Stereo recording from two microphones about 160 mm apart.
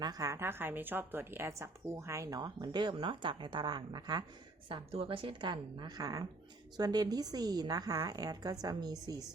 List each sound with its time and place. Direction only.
0.0 s a woman's voice: 20° right (ahead or behind)